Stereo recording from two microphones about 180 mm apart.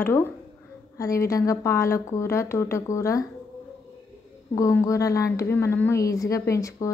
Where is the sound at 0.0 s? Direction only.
15° left (ahead or behind).